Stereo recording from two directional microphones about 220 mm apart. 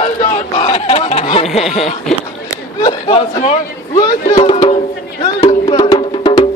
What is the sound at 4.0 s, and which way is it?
Speech, 15° left (ahead or behind).